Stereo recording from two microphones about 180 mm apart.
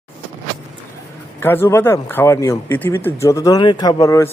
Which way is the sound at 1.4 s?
10° left (ahead or behind).